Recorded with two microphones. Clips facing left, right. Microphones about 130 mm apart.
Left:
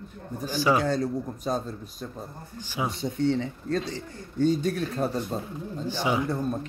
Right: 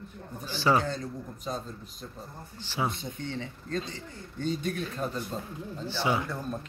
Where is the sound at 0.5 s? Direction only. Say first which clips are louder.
Left 2 dB; 15° left (ahead or behind).